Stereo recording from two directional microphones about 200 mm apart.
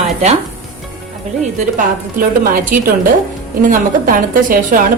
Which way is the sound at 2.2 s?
45° right (ahead or behind).